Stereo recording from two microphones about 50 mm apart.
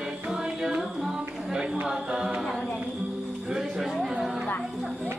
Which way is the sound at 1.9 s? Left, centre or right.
Centre.